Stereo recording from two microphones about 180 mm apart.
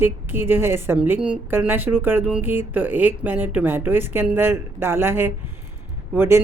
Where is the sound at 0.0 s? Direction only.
10° right (ahead or behind).